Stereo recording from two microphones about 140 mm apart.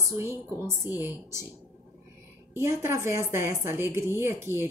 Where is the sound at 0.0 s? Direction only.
20° right (ahead or behind).